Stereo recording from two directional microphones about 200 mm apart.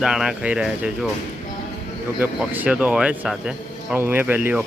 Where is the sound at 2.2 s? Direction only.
10° right (ahead or behind).